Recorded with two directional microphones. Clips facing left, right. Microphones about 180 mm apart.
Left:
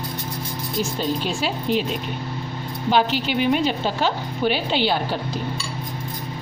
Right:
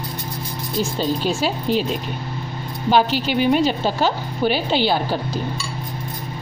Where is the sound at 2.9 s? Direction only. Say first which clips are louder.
Right 2 dB; 40° right (ahead or behind).